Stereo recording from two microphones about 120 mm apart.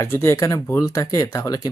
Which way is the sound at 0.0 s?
20° left (ahead or behind).